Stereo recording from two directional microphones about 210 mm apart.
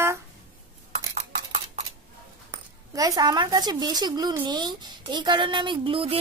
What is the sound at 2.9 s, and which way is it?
Speech, 15° right (ahead or behind).